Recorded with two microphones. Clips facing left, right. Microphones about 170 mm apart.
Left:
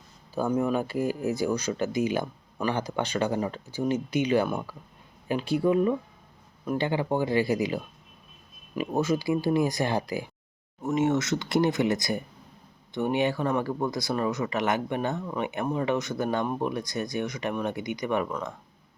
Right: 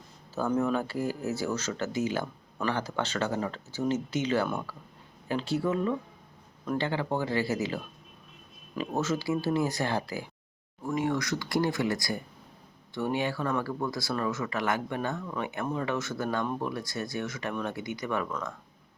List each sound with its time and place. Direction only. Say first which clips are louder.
0.3 s speech: left 2 dB; 10° left (ahead or behind)